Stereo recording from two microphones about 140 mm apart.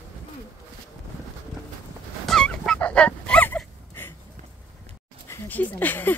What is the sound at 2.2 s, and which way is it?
Dog, 5° left (ahead or behind).